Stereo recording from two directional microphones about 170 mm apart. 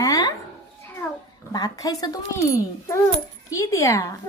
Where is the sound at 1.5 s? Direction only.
20° left (ahead or behind).